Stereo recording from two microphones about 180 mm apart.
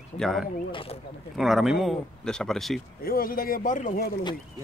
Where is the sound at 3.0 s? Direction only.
55° left (ahead or behind).